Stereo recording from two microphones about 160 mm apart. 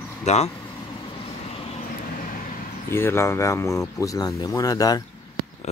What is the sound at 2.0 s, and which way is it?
Vehicle, 60° left (ahead or behind).